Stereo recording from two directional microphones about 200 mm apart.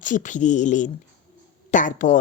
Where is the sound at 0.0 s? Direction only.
40° left (ahead or behind).